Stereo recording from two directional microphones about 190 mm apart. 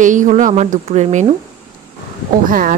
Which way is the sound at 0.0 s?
40° right (ahead or behind).